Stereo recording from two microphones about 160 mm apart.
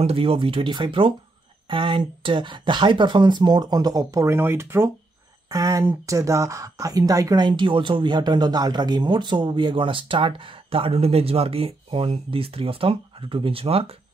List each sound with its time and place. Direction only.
0.0 s speech: 35° right (ahead or behind)